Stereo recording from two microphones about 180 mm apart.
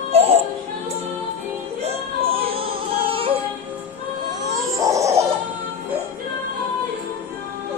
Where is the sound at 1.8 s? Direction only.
35° right (ahead or behind).